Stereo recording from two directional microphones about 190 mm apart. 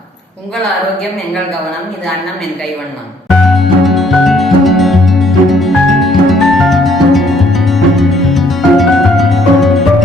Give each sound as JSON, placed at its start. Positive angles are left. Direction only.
{"t": 3.2, "sound": "music", "side_deg": 0}